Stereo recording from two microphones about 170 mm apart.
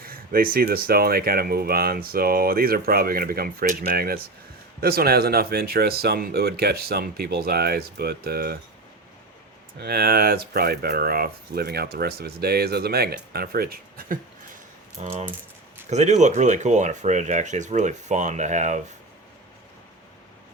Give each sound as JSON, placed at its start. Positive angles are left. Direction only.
{"t": 0.0, "sound": "speech", "side_deg": -60}
{"t": 9.7, "sound": "speech", "side_deg": -70}
{"t": 13.3, "sound": "a sound", "side_deg": -65}
{"t": 15.9, "sound": "speech", "side_deg": -45}